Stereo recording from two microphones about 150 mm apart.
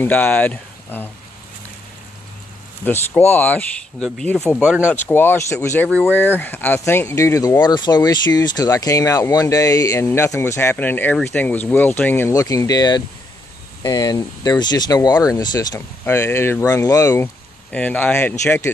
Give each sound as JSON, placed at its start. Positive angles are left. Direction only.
{"t": 0.0, "sound": "speech", "side_deg": 10}
{"t": 2.8, "sound": "speech", "side_deg": 15}
{"t": 4.6, "sound": "speech", "side_deg": -10}
{"t": 5.0, "sound": "speech", "side_deg": 15}
{"t": 16.1, "sound": "speech", "side_deg": 15}